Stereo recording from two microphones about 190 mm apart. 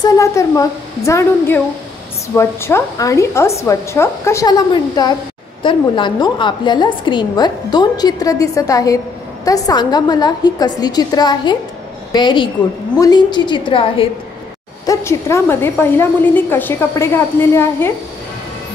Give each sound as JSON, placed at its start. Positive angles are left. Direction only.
{"t": 0.0, "sound": "a woman's voice", "side_deg": 15}
{"t": 14.9, "sound": "a woman's voice", "side_deg": 15}